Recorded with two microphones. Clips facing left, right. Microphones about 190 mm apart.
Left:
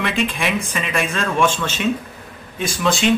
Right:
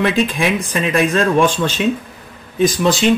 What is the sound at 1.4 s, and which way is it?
A man's voice, 35° right (ahead or behind).